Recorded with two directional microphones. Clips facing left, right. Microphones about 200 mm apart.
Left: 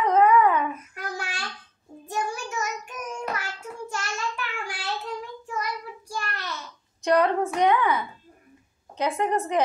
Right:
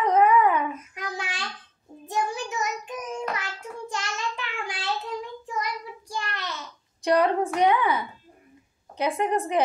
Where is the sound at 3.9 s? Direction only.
20° right (ahead or behind).